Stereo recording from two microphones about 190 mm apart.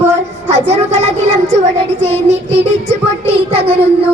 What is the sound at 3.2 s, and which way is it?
Speech, 30° right (ahead or behind).